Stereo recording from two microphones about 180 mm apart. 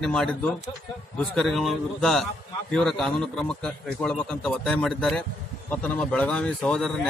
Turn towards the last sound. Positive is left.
turn(degrees=5)  # may be behind; listen again after turning